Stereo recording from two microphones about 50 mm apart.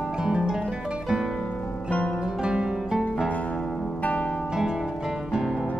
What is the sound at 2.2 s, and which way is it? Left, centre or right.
Music, centre.